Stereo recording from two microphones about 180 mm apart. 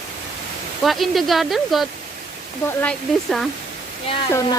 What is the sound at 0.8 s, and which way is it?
Speech, centre (ahead or behind).